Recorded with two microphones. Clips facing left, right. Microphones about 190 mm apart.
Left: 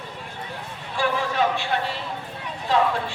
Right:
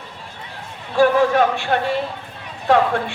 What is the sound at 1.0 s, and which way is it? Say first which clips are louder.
A man's voice: right 9 dB; 45° right (ahead or behind).